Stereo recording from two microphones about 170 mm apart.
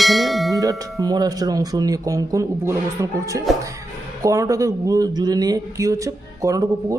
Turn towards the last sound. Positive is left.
turn(degrees=-20)  # may be behind; listen again after turning